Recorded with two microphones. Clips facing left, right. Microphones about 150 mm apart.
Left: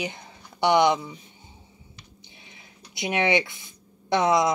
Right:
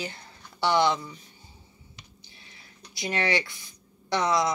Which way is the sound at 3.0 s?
20° left (ahead or behind).